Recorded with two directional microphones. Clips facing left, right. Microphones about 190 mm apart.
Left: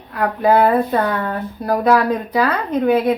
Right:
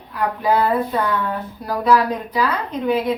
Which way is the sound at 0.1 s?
60° left (ahead or behind).